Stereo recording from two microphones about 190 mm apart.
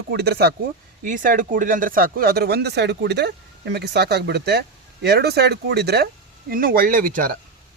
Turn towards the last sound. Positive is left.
turn(degrees=-45)  # may be behind; listen again after turning